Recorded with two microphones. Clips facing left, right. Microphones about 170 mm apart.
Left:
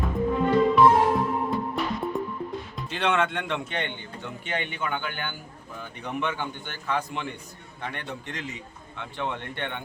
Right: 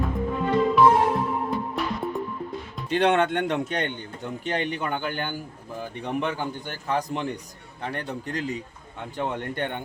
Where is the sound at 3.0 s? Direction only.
40° right (ahead or behind).